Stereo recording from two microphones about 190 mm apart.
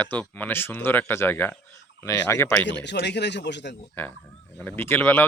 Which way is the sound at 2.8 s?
65° left (ahead or behind).